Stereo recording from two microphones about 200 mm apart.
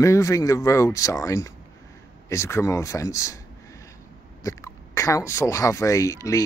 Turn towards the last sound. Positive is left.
turn(degrees=15)  # may be behind; listen again after turning